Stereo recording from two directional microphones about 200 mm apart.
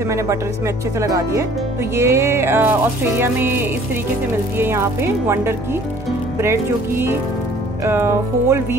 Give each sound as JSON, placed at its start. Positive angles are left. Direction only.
{"t": 1.0, "sound": "music", "side_deg": -15}